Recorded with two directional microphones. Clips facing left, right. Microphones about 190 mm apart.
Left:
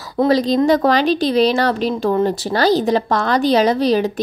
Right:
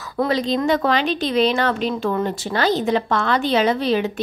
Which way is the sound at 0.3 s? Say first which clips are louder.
Left 6 dB; 35° left (ahead or behind).